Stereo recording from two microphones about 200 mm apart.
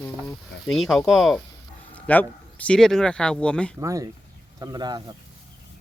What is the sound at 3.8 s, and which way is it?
Speech, 15° right (ahead or behind).